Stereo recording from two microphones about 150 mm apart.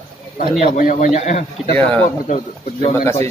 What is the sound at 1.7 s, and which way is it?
Speech, 10° left (ahead or behind).